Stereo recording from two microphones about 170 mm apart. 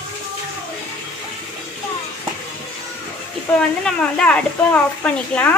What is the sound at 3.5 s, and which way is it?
Speech, 5° left (ahead or behind).